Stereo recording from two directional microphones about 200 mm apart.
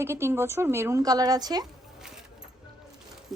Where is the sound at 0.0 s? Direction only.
15° right (ahead or behind).